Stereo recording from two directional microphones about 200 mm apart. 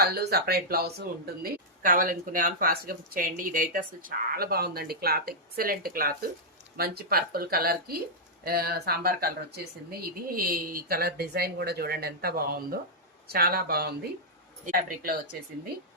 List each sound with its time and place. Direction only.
0.0 s speech: 50° right (ahead or behind)